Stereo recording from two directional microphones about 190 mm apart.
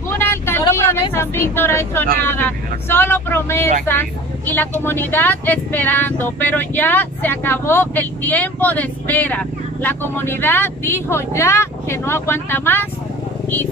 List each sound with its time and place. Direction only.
0.1 s vehicle: 10° left (ahead or behind)
1.1 s speech: 10° left (ahead or behind)